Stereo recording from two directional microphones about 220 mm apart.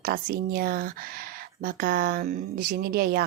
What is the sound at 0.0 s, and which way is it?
Speech, 40° right (ahead or behind).